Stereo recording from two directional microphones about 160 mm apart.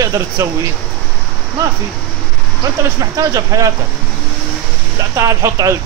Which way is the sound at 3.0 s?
25° right (ahead or behind).